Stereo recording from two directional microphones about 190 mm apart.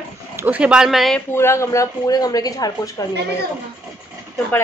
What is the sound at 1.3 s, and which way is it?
Speech, 15° left (ahead or behind).